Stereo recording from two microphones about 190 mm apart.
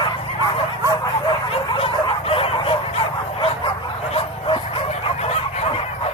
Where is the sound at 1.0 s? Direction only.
25° left (ahead or behind).